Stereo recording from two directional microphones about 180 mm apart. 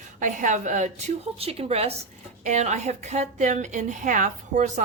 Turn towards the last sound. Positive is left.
turn(degrees=-45)  # may be behind; listen again after turning